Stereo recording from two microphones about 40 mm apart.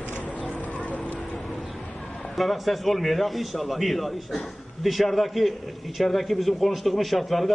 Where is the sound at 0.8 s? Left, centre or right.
Left.